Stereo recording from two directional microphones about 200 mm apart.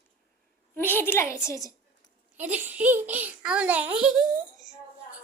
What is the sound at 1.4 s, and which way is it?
Speech, 15° left (ahead or behind).